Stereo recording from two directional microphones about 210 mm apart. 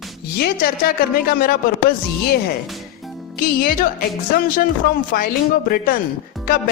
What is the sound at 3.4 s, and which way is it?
Speech, 45° left (ahead or behind).